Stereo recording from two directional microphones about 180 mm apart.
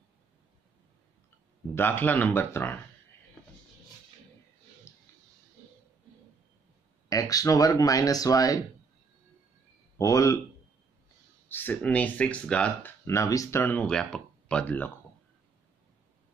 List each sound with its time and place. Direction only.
1.8 s speech: 10° left (ahead or behind)
4.9 s a sound: 15° left (ahead or behind)
7.1 s speech: 20° left (ahead or behind)
9.9 s speech: 20° left (ahead or behind)
11.4 s speech: 10° left (ahead or behind)